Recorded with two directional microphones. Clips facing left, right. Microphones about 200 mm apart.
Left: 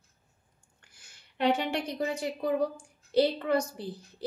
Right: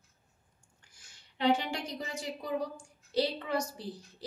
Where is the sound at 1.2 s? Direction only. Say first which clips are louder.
Left 1 dB; 60° left (ahead or behind).